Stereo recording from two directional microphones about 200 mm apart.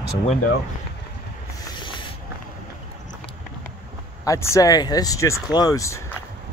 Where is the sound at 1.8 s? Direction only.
25° left (ahead or behind).